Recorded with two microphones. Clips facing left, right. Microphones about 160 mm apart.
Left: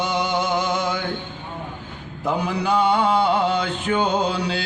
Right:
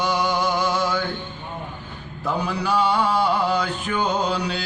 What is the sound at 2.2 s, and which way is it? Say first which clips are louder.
Mantra: left 2 dB; 20° left (ahead or behind).